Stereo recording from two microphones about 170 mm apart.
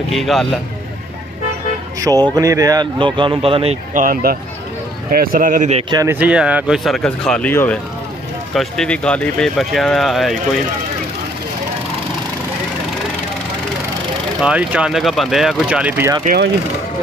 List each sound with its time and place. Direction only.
0.1 s speech: centre (ahead or behind)
2.0 s speech: 20° right (ahead or behind)
3.9 s speech: 55° right (ahead or behind)
5.9 s speech: 20° right (ahead or behind)
6.1 s speech: 5° right (ahead or behind)
14.4 s speech: 5° right (ahead or behind)
16.3 s speech: 55° right (ahead or behind)